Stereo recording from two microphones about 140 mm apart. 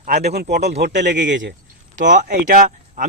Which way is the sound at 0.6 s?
60° right (ahead or behind).